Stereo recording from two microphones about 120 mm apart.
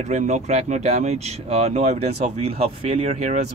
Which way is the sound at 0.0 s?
75° right (ahead or behind).